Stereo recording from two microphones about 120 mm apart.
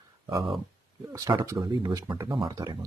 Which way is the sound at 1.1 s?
25° right (ahead or behind).